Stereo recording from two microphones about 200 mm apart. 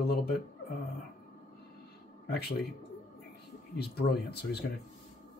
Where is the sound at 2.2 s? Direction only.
50° left (ahead or behind).